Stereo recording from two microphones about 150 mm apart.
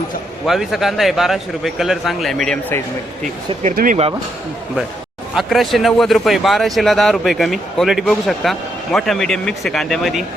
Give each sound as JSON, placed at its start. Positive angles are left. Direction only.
{"t": 0.4, "sound": "speech", "side_deg": 0}
{"t": 3.8, "sound": "speech", "side_deg": -85}
{"t": 5.3, "sound": "speech", "side_deg": 0}